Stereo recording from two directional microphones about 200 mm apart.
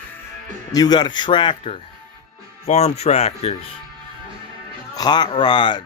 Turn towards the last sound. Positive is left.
turn(degrees=25)  # may be behind; listen again after turning